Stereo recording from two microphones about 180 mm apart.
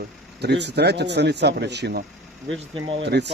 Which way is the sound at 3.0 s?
70° right (ahead or behind).